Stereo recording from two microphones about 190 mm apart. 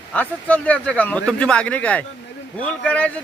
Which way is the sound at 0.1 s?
5° left (ahead or behind).